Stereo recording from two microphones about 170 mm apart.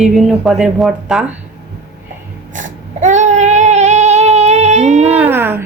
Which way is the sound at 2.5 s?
45° right (ahead or behind).